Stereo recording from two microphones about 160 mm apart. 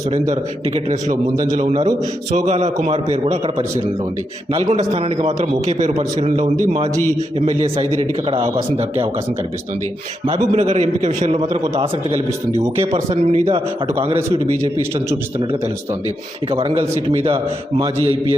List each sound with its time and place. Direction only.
1.5 s a man's voice: 45° right (ahead or behind)
4.5 s a man's voice: 35° right (ahead or behind)
10.2 s a man's voice: 40° right (ahead or behind)
14.2 s a man's voice: 20° right (ahead or behind)
16.5 s a man's voice: 35° right (ahead or behind)